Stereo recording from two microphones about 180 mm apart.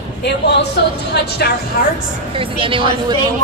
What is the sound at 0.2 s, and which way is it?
Speech, 70° left (ahead or behind).